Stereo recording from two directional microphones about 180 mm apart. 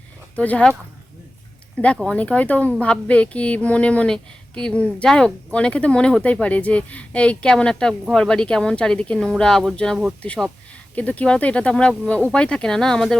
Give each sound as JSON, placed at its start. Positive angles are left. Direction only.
{"t": 0.3, "sound": "speech", "side_deg": 10}
{"t": 1.8, "sound": "speech", "side_deg": 5}